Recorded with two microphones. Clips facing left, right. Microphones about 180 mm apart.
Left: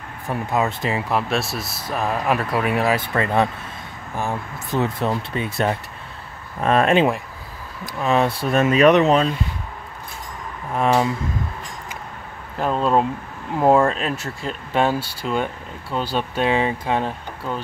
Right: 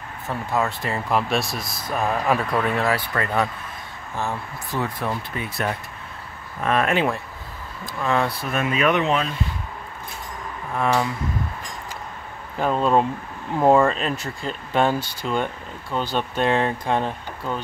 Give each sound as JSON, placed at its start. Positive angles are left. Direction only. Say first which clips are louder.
{"t": 0.3, "sound": "speech", "louder": "left 2 dB", "side_deg": 20}
{"t": 1.0, "sound": "speech", "louder": "even", "side_deg": 0}
{"t": 10.8, "sound": "speech", "louder": "left 3 dB", "side_deg": 25}
{"t": 12.5, "sound": "speech", "louder": "even", "side_deg": 0}